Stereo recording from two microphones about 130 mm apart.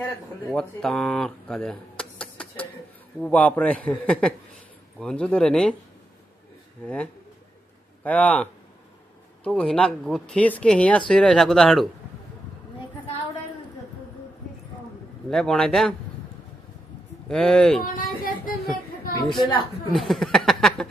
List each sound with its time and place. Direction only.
0.5 s speech: 5° left (ahead or behind)
8.0 s speech: 10° left (ahead or behind)
15.2 s speech: 5° left (ahead or behind)
17.3 s speech: 5° left (ahead or behind)
17.8 s a sound: 90° left
19.2 s a woman's voice: 40° left (ahead or behind)
19.9 s speech: centre (ahead or behind)